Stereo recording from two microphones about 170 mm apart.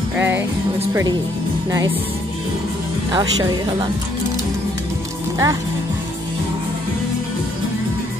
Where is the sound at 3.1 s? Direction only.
25° right (ahead or behind).